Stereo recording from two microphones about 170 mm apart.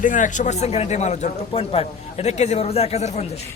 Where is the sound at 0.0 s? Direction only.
50° left (ahead or behind).